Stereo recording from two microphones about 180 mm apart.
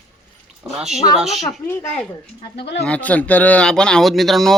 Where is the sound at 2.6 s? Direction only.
70° left (ahead or behind).